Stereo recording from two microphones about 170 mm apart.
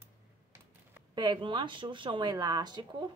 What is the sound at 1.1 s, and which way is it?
Speech, 25° right (ahead or behind).